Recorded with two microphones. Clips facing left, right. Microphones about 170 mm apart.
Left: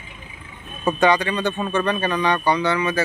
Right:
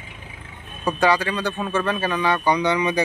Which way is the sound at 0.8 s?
Centre (ahead or behind).